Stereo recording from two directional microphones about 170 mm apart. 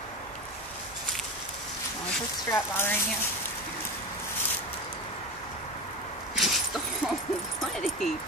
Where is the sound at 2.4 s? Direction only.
15° left (ahead or behind).